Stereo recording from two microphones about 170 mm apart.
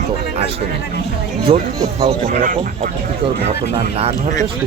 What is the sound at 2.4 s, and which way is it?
Speech, 55° right (ahead or behind).